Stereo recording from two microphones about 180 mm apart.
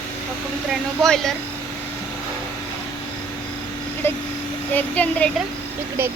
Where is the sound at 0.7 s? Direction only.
Centre (ahead or behind).